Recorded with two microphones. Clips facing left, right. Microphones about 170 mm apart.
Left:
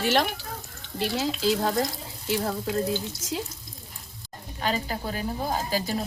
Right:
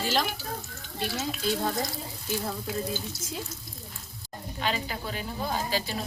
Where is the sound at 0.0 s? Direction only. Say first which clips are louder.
Left 5 dB; 65° left (ahead or behind).